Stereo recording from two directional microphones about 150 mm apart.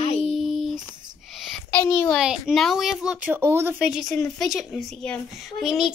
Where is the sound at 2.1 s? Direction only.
5° right (ahead or behind).